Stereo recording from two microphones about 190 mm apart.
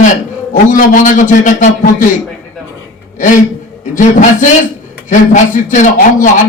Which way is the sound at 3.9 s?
40° left (ahead or behind).